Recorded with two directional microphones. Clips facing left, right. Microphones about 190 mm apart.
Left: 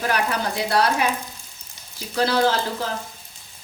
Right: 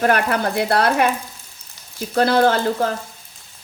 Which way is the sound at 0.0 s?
55° right (ahead or behind).